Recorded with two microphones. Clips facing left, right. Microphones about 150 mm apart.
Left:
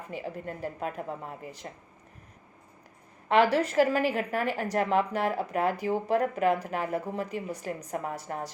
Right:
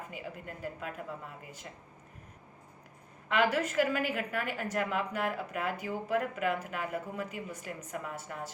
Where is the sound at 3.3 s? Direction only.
35° left (ahead or behind).